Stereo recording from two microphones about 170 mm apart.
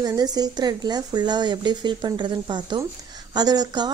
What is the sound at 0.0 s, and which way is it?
A woman's voice, 25° right (ahead or behind).